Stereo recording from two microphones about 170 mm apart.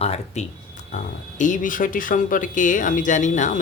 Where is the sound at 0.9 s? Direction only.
50° left (ahead or behind).